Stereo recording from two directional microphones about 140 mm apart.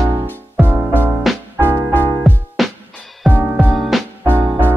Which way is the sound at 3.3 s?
10° right (ahead or behind).